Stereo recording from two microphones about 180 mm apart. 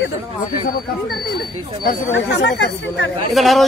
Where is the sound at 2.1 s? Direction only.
80° left.